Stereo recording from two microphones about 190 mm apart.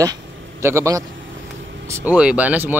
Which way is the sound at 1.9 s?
10° right (ahead or behind).